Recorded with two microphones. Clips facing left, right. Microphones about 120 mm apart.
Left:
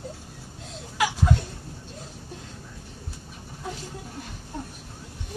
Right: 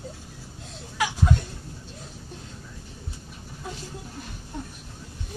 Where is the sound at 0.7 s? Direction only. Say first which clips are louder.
Left 2 dB; 90° left.